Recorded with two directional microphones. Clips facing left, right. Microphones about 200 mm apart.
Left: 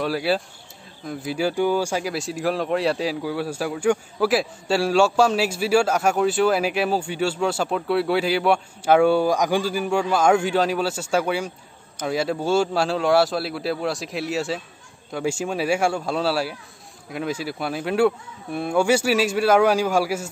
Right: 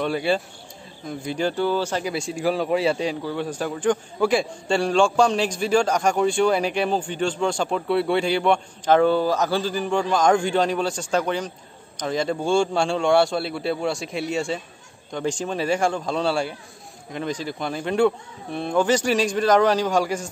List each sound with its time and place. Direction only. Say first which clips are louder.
0.0 s speech: even; 5° left (ahead or behind)